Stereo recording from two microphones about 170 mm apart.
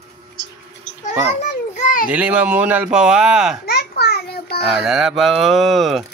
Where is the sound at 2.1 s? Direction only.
5° right (ahead or behind).